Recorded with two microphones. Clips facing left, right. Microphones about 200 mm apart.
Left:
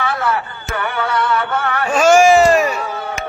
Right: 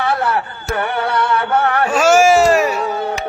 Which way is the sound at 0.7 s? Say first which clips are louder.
Right 2 dB; 45° right (ahead or behind).